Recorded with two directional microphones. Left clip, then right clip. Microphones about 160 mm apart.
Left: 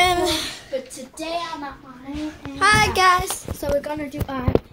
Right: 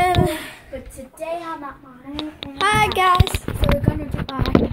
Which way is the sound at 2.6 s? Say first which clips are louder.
Left 1 dB; 20° right (ahead or behind).